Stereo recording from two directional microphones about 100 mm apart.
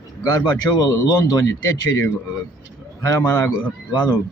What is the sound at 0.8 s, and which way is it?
Speech, 40° left (ahead or behind).